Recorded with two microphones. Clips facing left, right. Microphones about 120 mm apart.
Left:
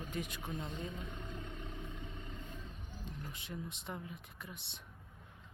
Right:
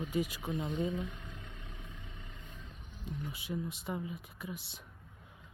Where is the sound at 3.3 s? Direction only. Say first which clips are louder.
Right 6 dB; 5° right (ahead or behind).